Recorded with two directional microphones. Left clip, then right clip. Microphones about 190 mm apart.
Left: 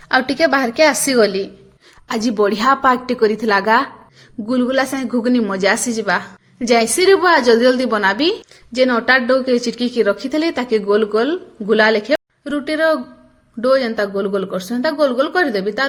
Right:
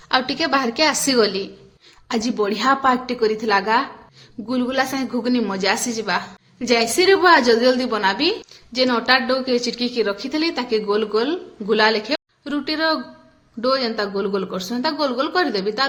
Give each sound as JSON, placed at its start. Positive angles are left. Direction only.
{"t": 0.1, "sound": "a woman's voice", "side_deg": 25}
{"t": 2.0, "sound": "a woman's voice", "side_deg": 30}